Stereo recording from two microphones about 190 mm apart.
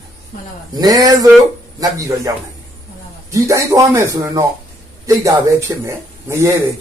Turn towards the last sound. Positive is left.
turn(degrees=-15)  # may be behind; listen again after turning